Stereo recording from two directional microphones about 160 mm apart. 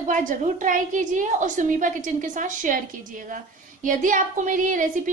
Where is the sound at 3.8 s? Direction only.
55° right (ahead or behind).